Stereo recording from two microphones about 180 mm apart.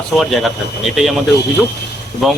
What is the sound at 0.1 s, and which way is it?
Speech, centre (ahead or behind).